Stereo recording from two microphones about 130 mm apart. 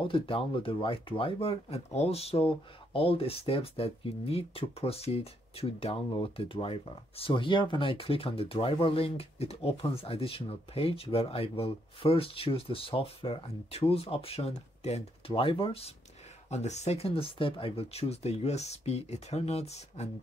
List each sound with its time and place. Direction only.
0.0 s speech: 45° left (ahead or behind)
16.4 s speech: 60° left (ahead or behind)